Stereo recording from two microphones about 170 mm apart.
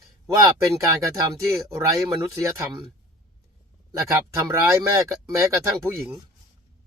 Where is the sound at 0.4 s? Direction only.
20° right (ahead or behind).